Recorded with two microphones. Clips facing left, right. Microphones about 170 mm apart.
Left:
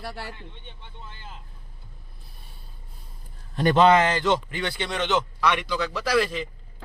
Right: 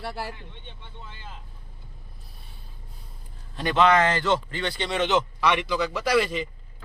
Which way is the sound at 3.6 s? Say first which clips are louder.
Left 4 dB; 45° left (ahead or behind).